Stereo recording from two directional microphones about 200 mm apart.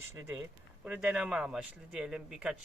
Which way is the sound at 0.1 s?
15° right (ahead or behind).